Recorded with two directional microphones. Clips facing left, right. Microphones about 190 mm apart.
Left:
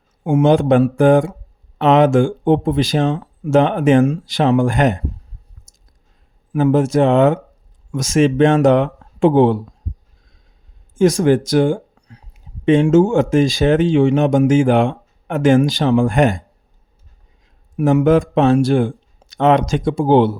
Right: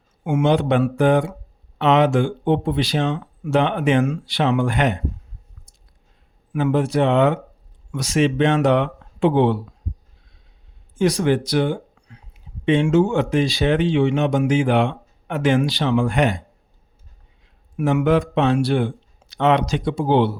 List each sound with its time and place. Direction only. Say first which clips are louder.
0.3 s speech: left 5 dB; 40° left (ahead or behind)
5.7 s a sound: even; 45° left (ahead or behind)
6.5 s speech: left 5 dB; 40° left (ahead or behind)
10.9 s speech: left 5 dB; 45° left (ahead or behind)
17.4 s speech: left 5 dB; 40° left (ahead or behind)